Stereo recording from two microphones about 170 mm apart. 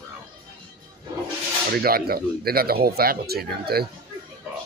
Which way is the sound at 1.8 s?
60° right (ahead or behind).